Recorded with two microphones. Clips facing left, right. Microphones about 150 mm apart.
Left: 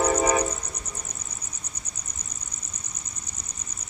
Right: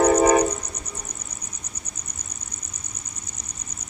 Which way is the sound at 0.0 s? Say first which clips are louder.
Right 6 dB; 55° right (ahead or behind).